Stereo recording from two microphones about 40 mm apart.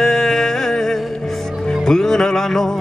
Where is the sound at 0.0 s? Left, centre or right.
Centre.